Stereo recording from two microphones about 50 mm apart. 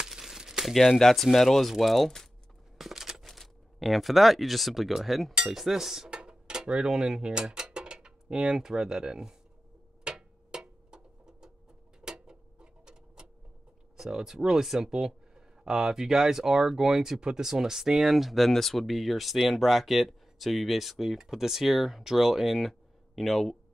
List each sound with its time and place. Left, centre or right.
0.0 s crumpling: centre
0.7 s speech: centre
2.8 s a sound: centre
3.3 s speech: centre
5.5 s dishes: centre
6.0 s speech: centre
10.0 s a sound: centre
12.0 s tick-tock: centre
13.9 s speech: centre